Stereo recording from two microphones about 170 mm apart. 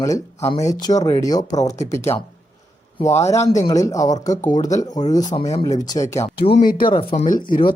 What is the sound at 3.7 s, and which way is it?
Speech, 20° left (ahead or behind).